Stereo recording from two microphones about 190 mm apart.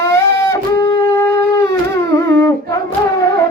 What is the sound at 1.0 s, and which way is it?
Shofar, 15° left (ahead or behind).